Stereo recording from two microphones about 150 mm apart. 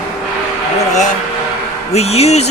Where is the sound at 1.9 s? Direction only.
45° left (ahead or behind).